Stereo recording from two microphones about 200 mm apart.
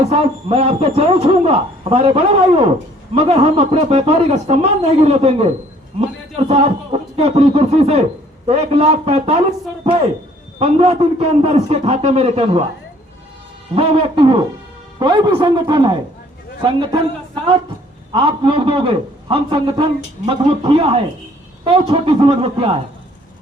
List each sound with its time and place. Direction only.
0.0 s a man's voice: 30° right (ahead or behind)
13.7 s a man's voice: 30° right (ahead or behind)